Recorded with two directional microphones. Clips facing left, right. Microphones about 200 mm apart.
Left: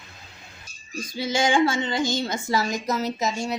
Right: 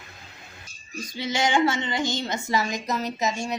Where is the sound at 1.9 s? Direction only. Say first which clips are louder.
Left 2 dB; 15° right (ahead or behind).